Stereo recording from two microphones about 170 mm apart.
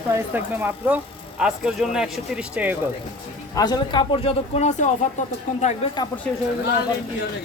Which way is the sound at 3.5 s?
25° left (ahead or behind).